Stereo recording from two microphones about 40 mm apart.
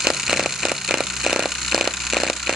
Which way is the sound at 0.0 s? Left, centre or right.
Centre.